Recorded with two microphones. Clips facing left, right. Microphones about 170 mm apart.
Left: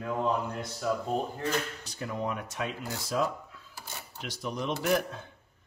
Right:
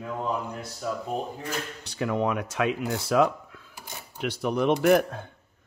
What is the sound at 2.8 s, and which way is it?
Speech, 65° right (ahead or behind).